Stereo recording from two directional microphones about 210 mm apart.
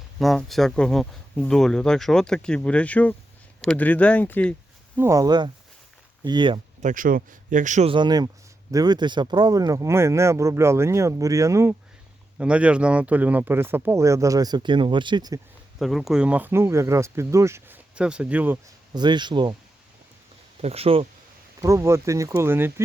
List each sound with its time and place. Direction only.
0.2 s speech: centre (ahead or behind)
4.9 s speech: 15° right (ahead or behind)
6.8 s speech: 40° right (ahead or behind); by 15.4 s 20° right (ahead or behind)
15.8 s speech: centre (ahead or behind)
18.9 s speech: 20° right (ahead or behind)
20.6 s speech: 30° right (ahead or behind)
21.6 s speech: 15° right (ahead or behind)